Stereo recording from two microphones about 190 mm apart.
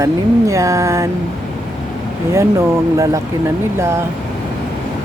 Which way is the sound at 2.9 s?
15° right (ahead or behind).